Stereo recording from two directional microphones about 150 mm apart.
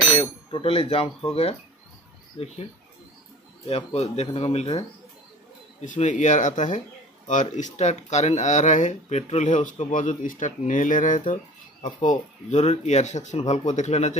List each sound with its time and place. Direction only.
0.5 s speech: 35° left (ahead or behind)
2.3 s speech: 45° left (ahead or behind)
3.6 s speech: 45° left (ahead or behind)
5.8 s speech: 55° left (ahead or behind)